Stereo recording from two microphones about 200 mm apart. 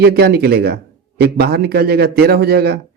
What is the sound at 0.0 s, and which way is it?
Speech, 50° right (ahead or behind).